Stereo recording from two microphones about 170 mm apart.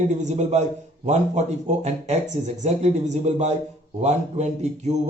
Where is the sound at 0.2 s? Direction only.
45° right (ahead or behind).